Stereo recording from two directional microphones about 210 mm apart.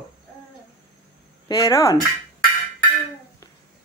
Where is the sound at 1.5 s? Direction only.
15° left (ahead or behind).